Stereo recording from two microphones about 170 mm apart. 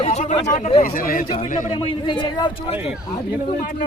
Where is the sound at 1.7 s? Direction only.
25° left (ahead or behind).